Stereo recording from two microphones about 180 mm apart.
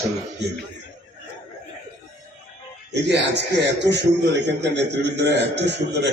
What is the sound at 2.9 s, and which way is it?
A man's voice, 75° right (ahead or behind).